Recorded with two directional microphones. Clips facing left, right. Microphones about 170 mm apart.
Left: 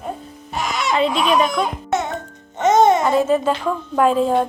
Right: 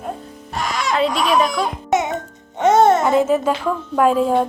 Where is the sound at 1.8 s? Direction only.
20° right (ahead or behind).